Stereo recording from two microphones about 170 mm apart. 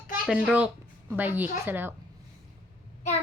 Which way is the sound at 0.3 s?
5° right (ahead or behind).